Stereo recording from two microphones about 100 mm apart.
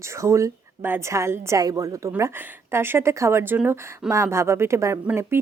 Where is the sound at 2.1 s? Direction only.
25° right (ahead or behind).